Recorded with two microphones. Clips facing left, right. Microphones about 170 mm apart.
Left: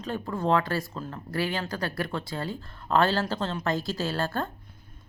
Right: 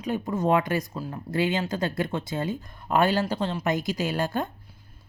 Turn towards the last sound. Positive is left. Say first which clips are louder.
# right 2 dB
turn(degrees=-15)  # may be behind; listen again after turning